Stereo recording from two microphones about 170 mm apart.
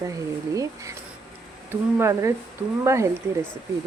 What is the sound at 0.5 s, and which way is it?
Speech, 20° right (ahead or behind).